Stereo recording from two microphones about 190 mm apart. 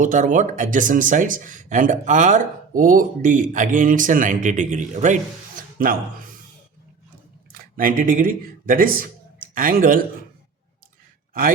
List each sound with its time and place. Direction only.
0.0 s speech: 40° right (ahead or behind)
7.5 s speech: 50° right (ahead or behind)